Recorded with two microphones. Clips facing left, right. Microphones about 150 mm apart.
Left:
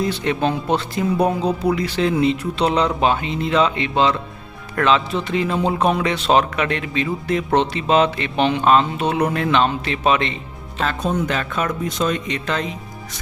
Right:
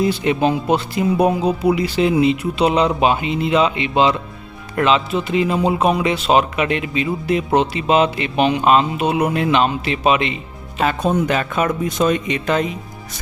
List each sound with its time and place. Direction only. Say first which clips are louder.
0.0 s speech: right 3 dB; 10° right (ahead or behind)